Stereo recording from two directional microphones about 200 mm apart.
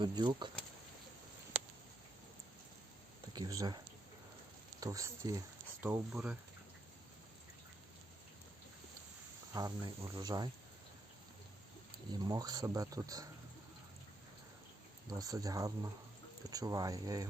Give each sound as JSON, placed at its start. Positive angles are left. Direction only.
{"t": 0.0, "sound": "speech", "side_deg": -20}
{"t": 1.5, "sound": "a sound", "side_deg": -30}
{"t": 3.3, "sound": "speech", "side_deg": -20}
{"t": 4.8, "sound": "speech", "side_deg": -15}
{"t": 9.5, "sound": "speech", "side_deg": -20}
{"t": 12.2, "sound": "speech", "side_deg": -20}
{"t": 15.1, "sound": "speech", "side_deg": -15}